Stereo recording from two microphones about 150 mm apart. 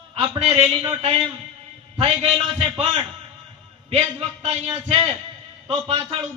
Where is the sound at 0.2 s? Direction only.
45° right (ahead or behind).